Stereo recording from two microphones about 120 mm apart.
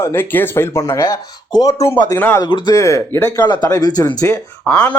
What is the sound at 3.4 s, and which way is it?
Speech, 35° left (ahead or behind).